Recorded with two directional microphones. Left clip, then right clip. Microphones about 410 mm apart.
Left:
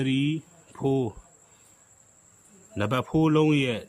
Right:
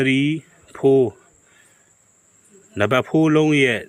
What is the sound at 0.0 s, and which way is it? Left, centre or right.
Speech, centre.